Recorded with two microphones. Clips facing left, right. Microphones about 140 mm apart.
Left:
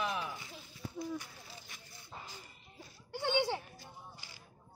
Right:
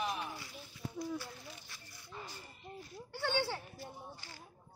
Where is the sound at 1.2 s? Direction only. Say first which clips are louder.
Right 3 dB; 20° left (ahead or behind).